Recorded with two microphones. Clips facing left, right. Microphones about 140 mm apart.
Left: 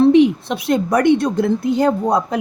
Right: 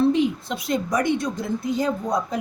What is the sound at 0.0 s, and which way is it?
A woman's voice, 70° left (ahead or behind).